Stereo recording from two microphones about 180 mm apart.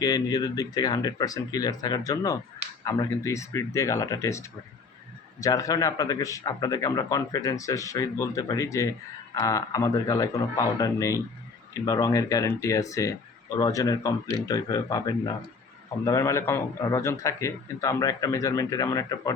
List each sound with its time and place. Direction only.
0.0 s a man's voice: 20° left (ahead or behind)